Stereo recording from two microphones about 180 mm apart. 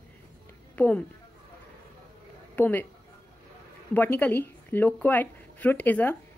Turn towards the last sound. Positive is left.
turn(degrees=10)  # may be behind; listen again after turning